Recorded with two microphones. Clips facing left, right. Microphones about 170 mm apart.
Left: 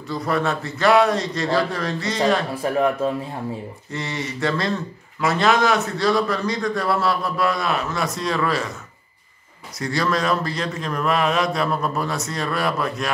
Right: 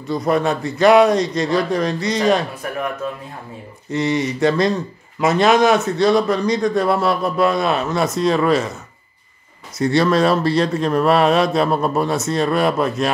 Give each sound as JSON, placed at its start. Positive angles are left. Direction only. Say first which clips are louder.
{"t": 0.3, "sound": "a man's voice", "louder": "right 4 dB", "side_deg": -20}
{"t": 2.6, "sound": "speech", "louder": "left 4 dB", "side_deg": 30}
{"t": 3.9, "sound": "a man's voice", "louder": "right 10 dB", "side_deg": -20}
{"t": 9.8, "sound": "a man's voice", "louder": "right 7 dB", "side_deg": -25}